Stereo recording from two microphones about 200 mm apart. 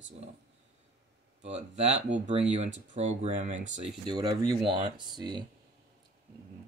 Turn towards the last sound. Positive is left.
turn(degrees=-20)  # may be behind; listen again after turning